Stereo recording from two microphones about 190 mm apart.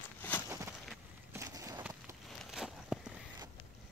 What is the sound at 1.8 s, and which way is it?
Walk, 10° right (ahead or behind).